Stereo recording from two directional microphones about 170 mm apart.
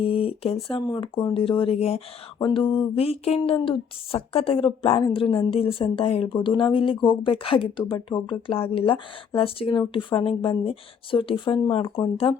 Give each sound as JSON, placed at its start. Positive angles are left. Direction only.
{"t": 0.0, "sound": "speech", "side_deg": 35}